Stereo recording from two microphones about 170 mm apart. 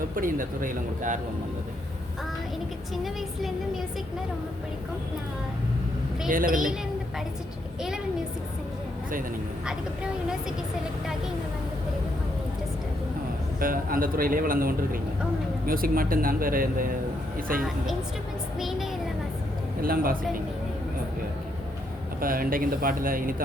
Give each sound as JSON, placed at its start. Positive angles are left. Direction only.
{"t": 0.2, "sound": "speech", "side_deg": -55}
{"t": 2.9, "sound": "a woman's voice", "side_deg": 0}
{"t": 6.2, "sound": "speech", "side_deg": -55}
{"t": 9.6, "sound": "a woman's voice", "side_deg": -5}
{"t": 13.6, "sound": "speech", "side_deg": -55}
{"t": 18.6, "sound": "a woman's voice", "side_deg": 0}
{"t": 19.8, "sound": "speech", "side_deg": -60}
{"t": 22.2, "sound": "speech", "side_deg": -55}